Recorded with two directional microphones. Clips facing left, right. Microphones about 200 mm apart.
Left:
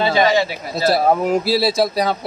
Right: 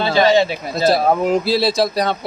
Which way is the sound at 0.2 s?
25° right (ahead or behind).